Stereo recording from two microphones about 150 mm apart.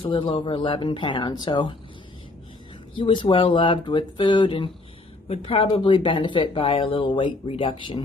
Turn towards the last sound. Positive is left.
turn(degrees=35)  # may be behind; listen again after turning